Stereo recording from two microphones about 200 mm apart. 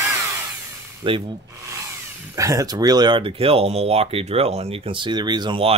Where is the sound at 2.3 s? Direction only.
15° right (ahead or behind).